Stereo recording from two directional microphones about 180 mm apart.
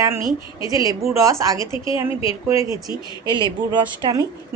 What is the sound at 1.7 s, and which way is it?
Speech, 25° left (ahead or behind).